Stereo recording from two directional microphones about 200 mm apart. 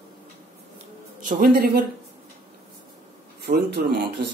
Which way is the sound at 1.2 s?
45° right (ahead or behind).